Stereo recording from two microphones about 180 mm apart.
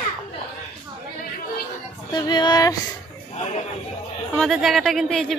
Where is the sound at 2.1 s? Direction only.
25° left (ahead or behind).